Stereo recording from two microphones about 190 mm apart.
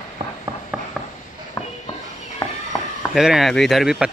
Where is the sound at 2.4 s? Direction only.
20° left (ahead or behind).